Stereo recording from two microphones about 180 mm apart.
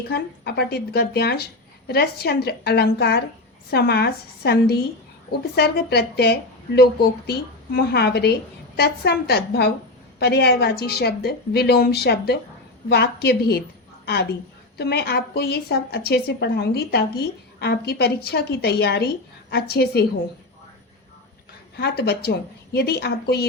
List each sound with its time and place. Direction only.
0.1 s a woman's voice: 65° left (ahead or behind)
21.8 s a woman's voice: 65° left (ahead or behind)